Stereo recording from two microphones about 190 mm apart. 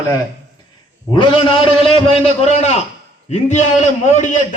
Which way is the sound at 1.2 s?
30° left (ahead or behind).